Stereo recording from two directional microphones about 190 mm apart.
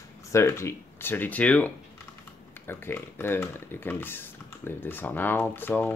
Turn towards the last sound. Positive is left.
turn(degrees=10)  # may be behind; listen again after turning